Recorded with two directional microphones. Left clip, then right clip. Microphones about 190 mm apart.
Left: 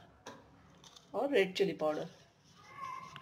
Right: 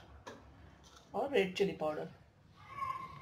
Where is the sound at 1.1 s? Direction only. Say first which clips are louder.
Left 2 dB; 40° left (ahead or behind).